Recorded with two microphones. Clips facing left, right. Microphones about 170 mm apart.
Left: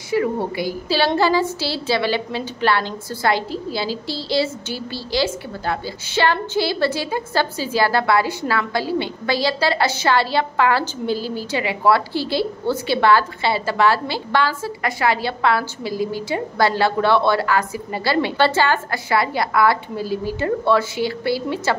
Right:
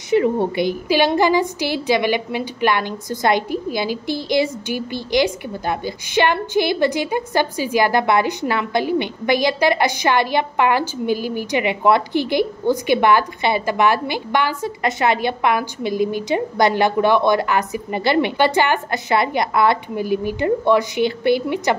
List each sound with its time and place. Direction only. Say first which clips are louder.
0.1 s a woman's voice: right 4 dB; 20° right (ahead or behind)